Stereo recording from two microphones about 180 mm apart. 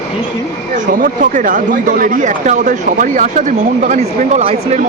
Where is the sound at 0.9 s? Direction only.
50° right (ahead or behind).